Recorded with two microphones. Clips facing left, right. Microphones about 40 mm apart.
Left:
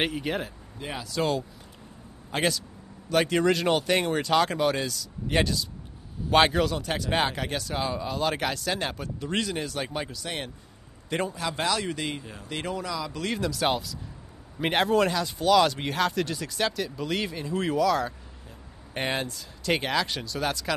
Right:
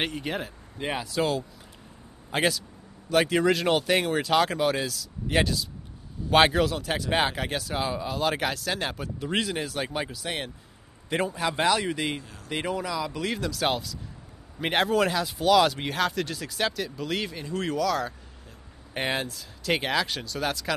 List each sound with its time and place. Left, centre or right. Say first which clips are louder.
0.0 s speech: left 2 dB; centre
0.7 s speech: right 5 dB; right
1.0 s a man's voice: left 2 dB; centre
11.3 s speech: right 3 dB; centre